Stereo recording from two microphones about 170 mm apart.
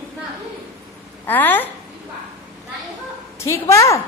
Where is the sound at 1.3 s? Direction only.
10° left (ahead or behind).